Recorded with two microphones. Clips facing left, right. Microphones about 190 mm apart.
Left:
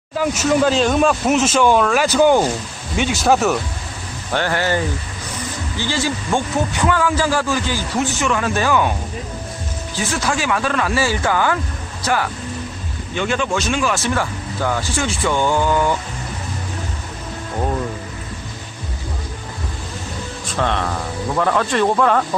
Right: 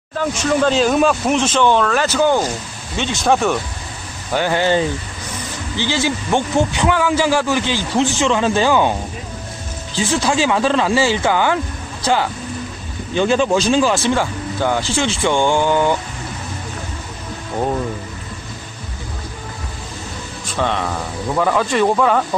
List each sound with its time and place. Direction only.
0.2 s speech: 5° left (ahead or behind)
4.3 s a man's voice: 15° right (ahead or behind)
9.9 s a man's voice: 25° right (ahead or behind)
13.1 s a man's voice: 30° right (ahead or behind)
20.5 s speech: centre (ahead or behind)